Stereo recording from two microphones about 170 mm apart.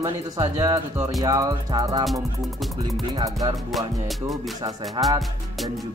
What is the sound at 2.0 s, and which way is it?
Music, centre (ahead or behind).